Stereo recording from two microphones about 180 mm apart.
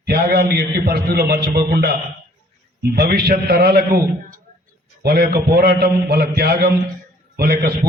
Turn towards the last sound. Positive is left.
turn(degrees=-60)  # may be behind; listen again after turning